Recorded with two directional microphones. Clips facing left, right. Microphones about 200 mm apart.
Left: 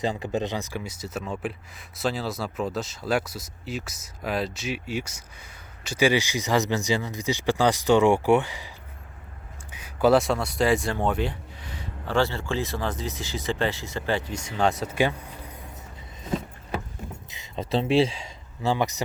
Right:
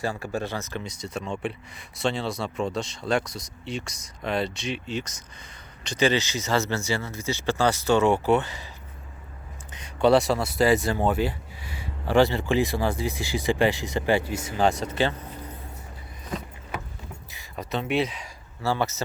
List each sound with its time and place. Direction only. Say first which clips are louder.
0.0 s speech: left 2 dB; 20° left (ahead or behind)
9.7 s speech: even; 5° left (ahead or behind)
16.2 s a sound: left 5 dB; 25° left (ahead or behind)
17.3 s speech: left 4 dB; 25° left (ahead or behind)